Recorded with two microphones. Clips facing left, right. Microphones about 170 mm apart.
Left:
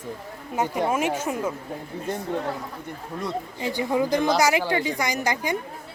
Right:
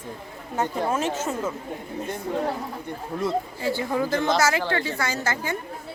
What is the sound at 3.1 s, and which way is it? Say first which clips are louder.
Speech: right 5 dB; centre (ahead or behind).